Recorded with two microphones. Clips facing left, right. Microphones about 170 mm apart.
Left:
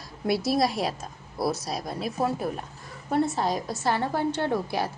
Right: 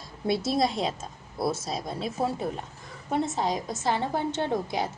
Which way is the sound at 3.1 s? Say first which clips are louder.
Left 2 dB; 20° right (ahead or behind).